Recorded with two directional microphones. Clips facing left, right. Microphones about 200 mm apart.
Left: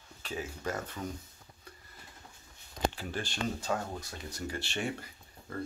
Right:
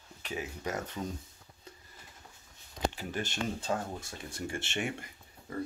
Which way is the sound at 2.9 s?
20° right (ahead or behind).